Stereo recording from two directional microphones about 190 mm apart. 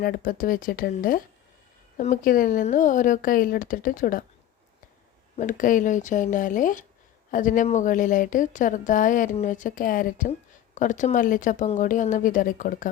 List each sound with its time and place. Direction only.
0.0 s speech: 50° left (ahead or behind)
5.4 s speech: 45° left (ahead or behind)